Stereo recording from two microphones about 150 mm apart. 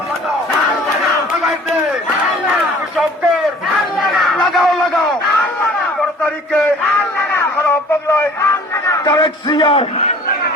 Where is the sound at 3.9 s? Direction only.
Centre (ahead or behind).